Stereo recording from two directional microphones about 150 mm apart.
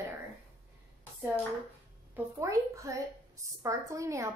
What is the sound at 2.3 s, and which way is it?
A woman's voice, 20° right (ahead or behind).